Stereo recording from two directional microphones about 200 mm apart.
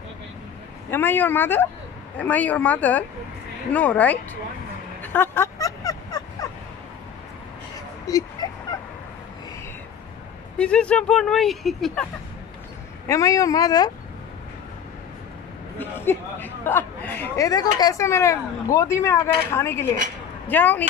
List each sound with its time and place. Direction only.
0.8 s speech: 10° left (ahead or behind)
5.0 s a sound: 10° left (ahead or behind)
8.1 s speech: 20° left (ahead or behind)
10.6 s speech: 5° left (ahead or behind)
13.0 s speech: 15° left (ahead or behind)
15.8 s speech: 10° left (ahead or behind)